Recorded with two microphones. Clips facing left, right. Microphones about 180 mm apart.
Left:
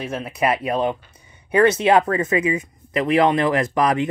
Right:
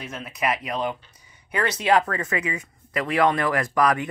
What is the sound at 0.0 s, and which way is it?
Speech, 30° left (ahead or behind).